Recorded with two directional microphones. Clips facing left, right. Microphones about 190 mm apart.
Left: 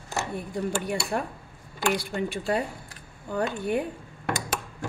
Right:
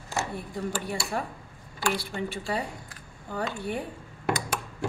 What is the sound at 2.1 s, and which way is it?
Speech, 55° left (ahead or behind).